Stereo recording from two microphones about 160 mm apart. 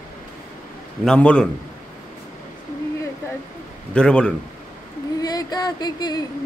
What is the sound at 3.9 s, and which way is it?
Speech, 5° left (ahead or behind).